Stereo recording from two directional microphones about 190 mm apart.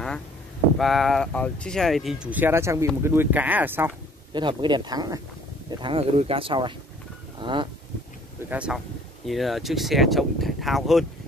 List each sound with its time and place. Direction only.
0.7 s speech: centre (ahead or behind)
4.3 s speech: 25° right (ahead or behind)
8.5 s speech: 5° right (ahead or behind)